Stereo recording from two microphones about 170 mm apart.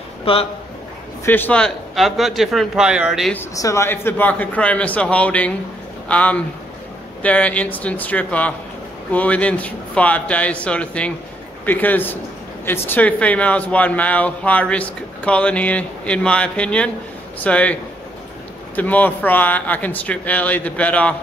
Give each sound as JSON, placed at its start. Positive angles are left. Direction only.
{"t": 0.2, "sound": "a man's voice", "side_deg": 35}
{"t": 1.2, "sound": "speech", "side_deg": 10}
{"t": 3.3, "sound": "a man's voice", "side_deg": 20}
{"t": 18.8, "sound": "a man's voice", "side_deg": 10}